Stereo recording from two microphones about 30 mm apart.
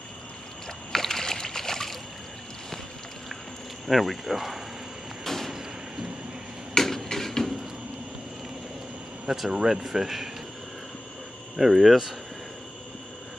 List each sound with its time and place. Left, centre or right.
0.9 s rowboat: centre
3.8 s speech: centre
5.2 s a sound: centre
6.7 s a sound: centre
9.5 s speech: centre
9.8 s speech: centre
11.5 s speech: centre